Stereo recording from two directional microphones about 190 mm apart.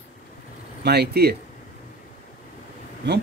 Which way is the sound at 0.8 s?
60° right (ahead or behind).